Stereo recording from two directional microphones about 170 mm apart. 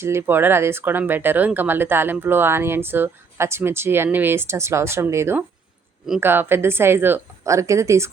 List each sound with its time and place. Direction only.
0.0 s speech: 15° right (ahead or behind)